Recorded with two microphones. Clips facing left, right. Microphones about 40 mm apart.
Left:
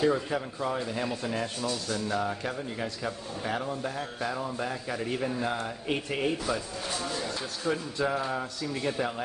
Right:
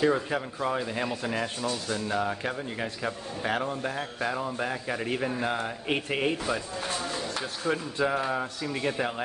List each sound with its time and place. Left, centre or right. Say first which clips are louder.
0.0 s speech: right 1 dB; right
3.4 s a sound: right 3 dB; right
4.4 s speech: right 2 dB; right
7.6 s speech: right 1 dB; right